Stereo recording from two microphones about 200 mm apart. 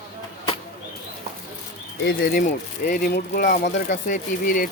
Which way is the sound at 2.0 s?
50° left (ahead or behind).